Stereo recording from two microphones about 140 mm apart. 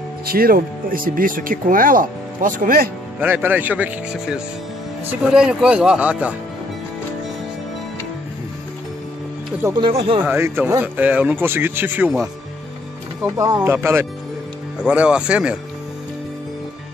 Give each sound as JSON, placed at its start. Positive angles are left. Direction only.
{"t": 0.3, "sound": "speech", "side_deg": -90}
{"t": 3.2, "sound": "speech", "side_deg": -10}
{"t": 9.8, "sound": "speech", "side_deg": -40}
{"t": 10.2, "sound": "speech", "side_deg": -15}
{"t": 13.2, "sound": "speech", "side_deg": -25}